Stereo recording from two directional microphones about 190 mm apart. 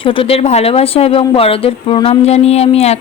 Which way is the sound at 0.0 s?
30° left (ahead or behind).